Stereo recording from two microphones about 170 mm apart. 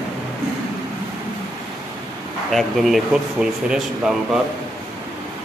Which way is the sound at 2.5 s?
Centre (ahead or behind).